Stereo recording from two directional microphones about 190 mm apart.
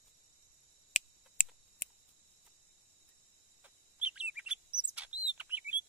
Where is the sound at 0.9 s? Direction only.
45° left (ahead or behind).